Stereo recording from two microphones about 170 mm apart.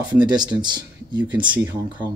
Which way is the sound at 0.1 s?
25° right (ahead or behind).